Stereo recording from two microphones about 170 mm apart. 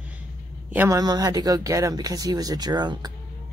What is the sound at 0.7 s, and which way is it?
Speech, 15° right (ahead or behind).